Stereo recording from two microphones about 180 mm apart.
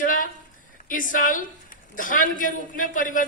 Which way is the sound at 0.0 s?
50° left (ahead or behind).